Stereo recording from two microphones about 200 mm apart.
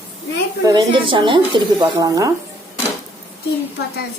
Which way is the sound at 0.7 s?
25° right (ahead or behind).